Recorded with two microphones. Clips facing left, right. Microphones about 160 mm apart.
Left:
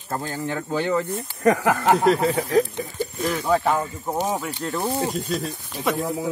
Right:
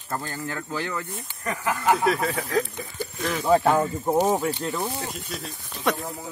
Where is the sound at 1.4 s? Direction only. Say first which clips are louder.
Left 8 dB; 80° left.